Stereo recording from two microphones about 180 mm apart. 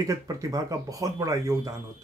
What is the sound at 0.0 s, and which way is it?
Speech, 20° right (ahead or behind).